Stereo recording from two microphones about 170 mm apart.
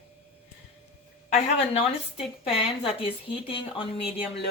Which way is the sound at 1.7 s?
35° left (ahead or behind).